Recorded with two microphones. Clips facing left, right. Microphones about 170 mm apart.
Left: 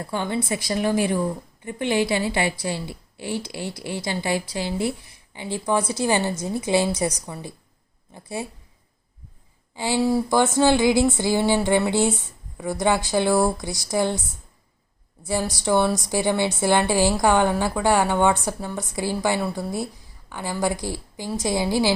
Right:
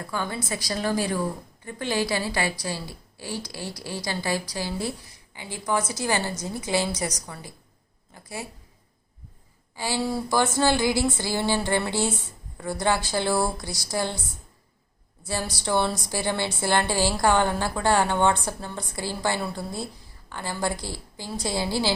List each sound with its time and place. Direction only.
0.0 s a woman's voice: 25° left (ahead or behind)
6.0 s a woman's voice: 15° left (ahead or behind)
9.7 s a woman's voice: 15° left (ahead or behind)
15.5 s a woman's voice: 15° left (ahead or behind)